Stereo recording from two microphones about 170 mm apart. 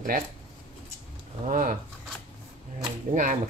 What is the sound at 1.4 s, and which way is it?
Speech, 50° right (ahead or behind).